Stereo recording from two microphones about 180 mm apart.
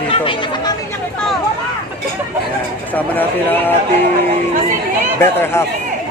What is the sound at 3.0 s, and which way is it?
Speech, 10° left (ahead or behind).